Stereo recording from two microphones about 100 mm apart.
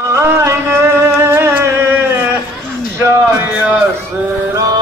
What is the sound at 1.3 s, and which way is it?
Music, 25° right (ahead or behind).